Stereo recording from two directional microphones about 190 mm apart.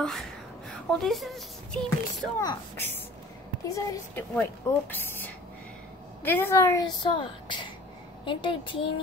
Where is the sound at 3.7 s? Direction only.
15° left (ahead or behind).